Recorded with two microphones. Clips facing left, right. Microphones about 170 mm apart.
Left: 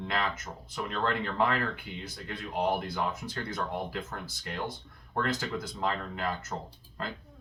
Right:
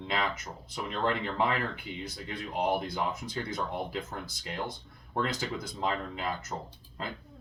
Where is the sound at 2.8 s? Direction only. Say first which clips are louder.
Even; 15° right (ahead or behind).